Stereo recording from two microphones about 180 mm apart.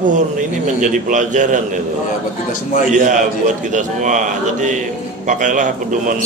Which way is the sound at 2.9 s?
45° right (ahead or behind).